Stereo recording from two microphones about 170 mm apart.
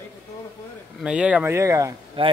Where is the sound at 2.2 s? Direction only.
30° right (ahead or behind).